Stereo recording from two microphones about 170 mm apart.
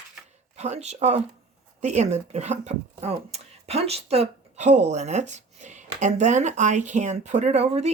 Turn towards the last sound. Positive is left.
turn(degrees=-40)  # may be behind; listen again after turning